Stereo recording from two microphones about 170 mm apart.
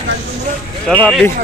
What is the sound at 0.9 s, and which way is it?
Speech, 5° left (ahead or behind).